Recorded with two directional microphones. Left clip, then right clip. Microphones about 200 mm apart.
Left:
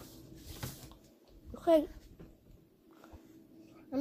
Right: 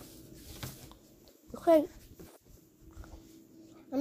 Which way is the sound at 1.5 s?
5° right (ahead or behind).